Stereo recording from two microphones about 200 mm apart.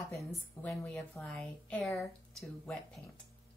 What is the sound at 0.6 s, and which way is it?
Speech, 10° left (ahead or behind).